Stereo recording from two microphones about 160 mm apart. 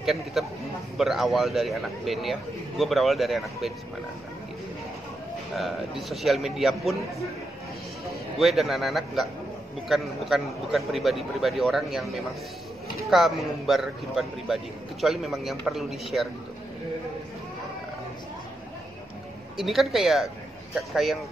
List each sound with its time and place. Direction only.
0.0 s a man's voice: centre (ahead or behind)
5.6 s a man's voice: centre (ahead or behind)
8.4 s a man's voice: centre (ahead or behind)
19.5 s a man's voice: centre (ahead or behind)